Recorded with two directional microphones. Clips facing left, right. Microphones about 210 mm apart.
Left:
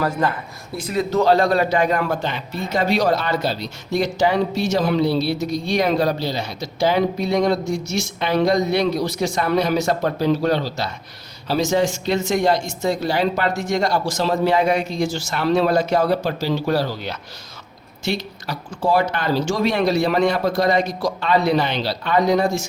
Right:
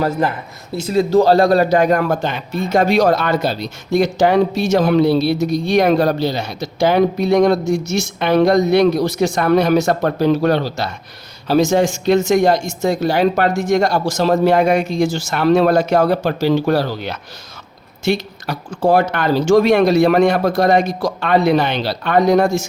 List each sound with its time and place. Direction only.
0.0 s a man's voice: 25° right (ahead or behind); by 22.4 s 55° right (ahead or behind)